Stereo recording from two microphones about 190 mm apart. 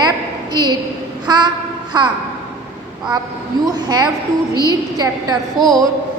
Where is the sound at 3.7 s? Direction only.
20° right (ahead or behind).